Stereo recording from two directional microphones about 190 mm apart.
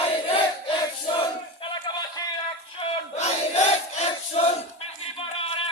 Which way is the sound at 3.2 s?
35° left (ahead or behind).